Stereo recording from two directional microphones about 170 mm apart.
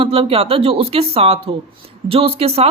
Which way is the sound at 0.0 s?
30° right (ahead or behind).